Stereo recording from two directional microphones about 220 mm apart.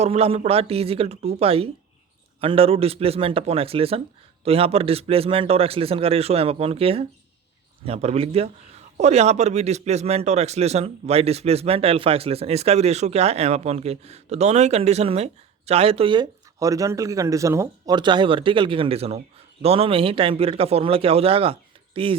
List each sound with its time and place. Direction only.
0.0 s a man's voice: 25° right (ahead or behind)